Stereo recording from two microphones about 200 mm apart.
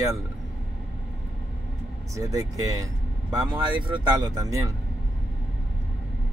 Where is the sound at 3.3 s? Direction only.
20° right (ahead or behind).